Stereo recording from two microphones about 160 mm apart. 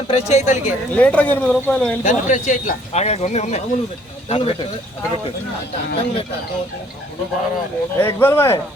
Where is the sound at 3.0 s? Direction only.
45° left (ahead or behind).